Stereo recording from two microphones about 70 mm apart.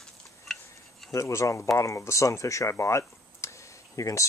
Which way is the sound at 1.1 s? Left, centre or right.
Left.